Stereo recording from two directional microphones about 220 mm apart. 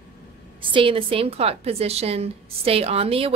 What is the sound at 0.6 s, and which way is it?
A woman's voice, 25° right (ahead or behind).